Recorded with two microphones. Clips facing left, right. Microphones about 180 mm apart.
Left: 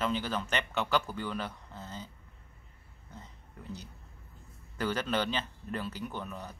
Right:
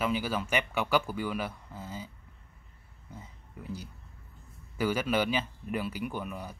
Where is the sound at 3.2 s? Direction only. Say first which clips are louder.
Right 4 dB; 10° right (ahead or behind).